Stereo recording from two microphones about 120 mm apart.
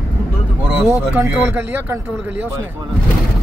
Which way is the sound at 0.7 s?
20° right (ahead or behind).